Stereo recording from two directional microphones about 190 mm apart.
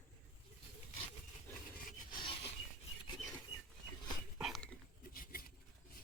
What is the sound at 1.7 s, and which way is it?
Rub, 50° left (ahead or behind).